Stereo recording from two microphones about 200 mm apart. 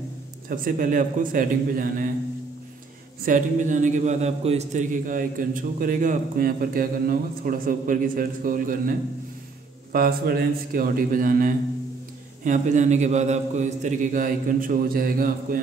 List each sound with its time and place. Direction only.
0.5 s a man's voice: 45° right (ahead or behind)
3.3 s a man's voice: 40° right (ahead or behind)
9.9 s a man's voice: 45° right (ahead or behind)